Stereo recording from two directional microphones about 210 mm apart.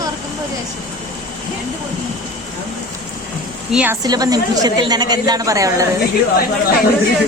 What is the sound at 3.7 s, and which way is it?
A woman's voice, 10° right (ahead or behind).